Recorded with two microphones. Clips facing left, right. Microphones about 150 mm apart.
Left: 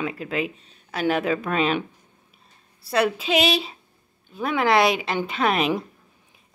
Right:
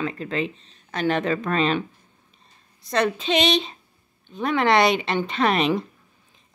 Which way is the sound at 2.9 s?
5° left (ahead or behind).